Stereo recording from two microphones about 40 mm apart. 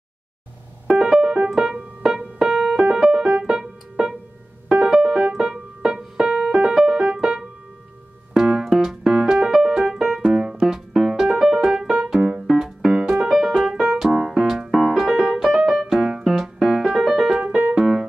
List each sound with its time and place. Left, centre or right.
0.8 s keyboard: centre
2.8 s keyboard: centre
8.3 s music: centre
10.3 s piano: centre
12.1 s piano: centre
12.4 s music: centre
13.5 s keyboard: centre
14.7 s piano: centre
16.6 s music: centre
17.4 s music: right
17.7 s keyboard: centre